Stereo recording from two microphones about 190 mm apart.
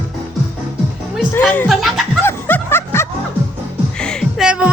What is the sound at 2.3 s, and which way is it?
Snicker, 10° left (ahead or behind).